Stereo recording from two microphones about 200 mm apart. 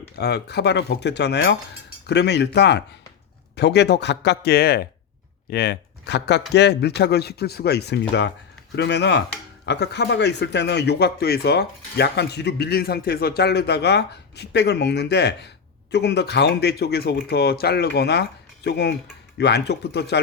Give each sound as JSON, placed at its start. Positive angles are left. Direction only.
{"t": 0.2, "sound": "a man's voice", "side_deg": 55}